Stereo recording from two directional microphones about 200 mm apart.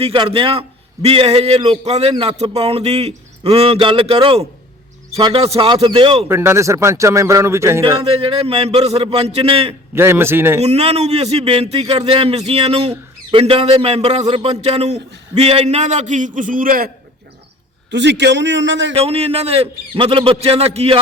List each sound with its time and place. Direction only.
0.0 s a man's voice: 30° right (ahead or behind)
6.2 s speech: 10° right (ahead or behind)
8.0 s a man's voice: 30° right (ahead or behind)
9.9 s speech: 10° right (ahead or behind)
10.6 s a man's voice: 30° right (ahead or behind)
17.9 s a man's voice: 60° right (ahead or behind)
18.9 s a man's voice: 30° right (ahead or behind)